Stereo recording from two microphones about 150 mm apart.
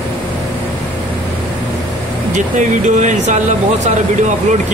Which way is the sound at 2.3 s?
55° right (ahead or behind).